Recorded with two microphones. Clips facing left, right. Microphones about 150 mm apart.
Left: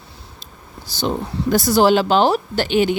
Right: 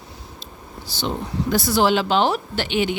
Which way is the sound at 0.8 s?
45° left (ahead or behind).